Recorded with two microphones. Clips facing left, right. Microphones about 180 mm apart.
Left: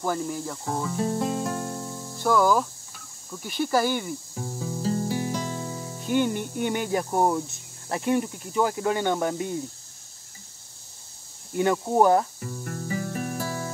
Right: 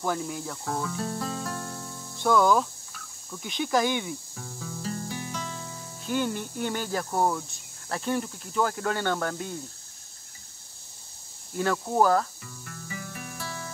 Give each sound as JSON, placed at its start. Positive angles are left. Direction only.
{"t": 0.0, "sound": "speech", "side_deg": 0}
{"t": 0.7, "sound": "music", "side_deg": 15}
{"t": 2.1, "sound": "speech", "side_deg": 5}
{"t": 4.4, "sound": "music", "side_deg": 25}
{"t": 6.0, "sound": "speech", "side_deg": 10}
{"t": 11.5, "sound": "speech", "side_deg": 15}
{"t": 12.4, "sound": "music", "side_deg": 40}